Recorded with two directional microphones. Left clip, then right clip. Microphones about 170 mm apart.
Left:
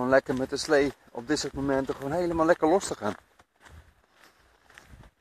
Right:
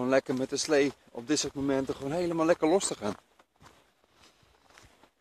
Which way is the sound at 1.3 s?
10° right (ahead or behind).